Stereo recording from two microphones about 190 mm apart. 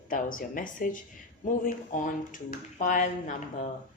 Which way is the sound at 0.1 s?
45° left (ahead or behind).